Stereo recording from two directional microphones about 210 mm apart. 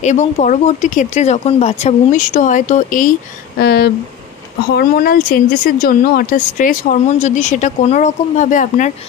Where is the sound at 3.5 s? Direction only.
50° left (ahead or behind).